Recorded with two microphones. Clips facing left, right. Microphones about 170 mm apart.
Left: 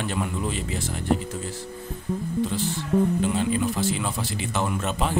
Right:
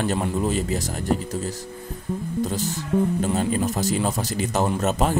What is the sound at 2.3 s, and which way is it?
Speech, 40° right (ahead or behind).